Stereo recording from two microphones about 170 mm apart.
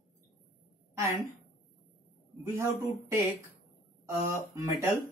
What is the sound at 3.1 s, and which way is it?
Speech, 15° right (ahead or behind).